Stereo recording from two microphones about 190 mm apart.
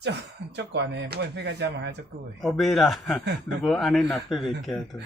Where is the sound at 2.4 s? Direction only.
Centre (ahead or behind).